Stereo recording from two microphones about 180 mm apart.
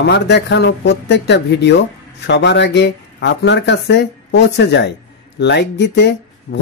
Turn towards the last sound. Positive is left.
turn(degrees=70)  # may be behind; listen again after turning